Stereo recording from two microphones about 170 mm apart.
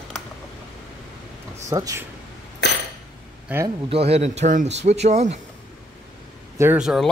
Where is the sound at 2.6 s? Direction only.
90° left.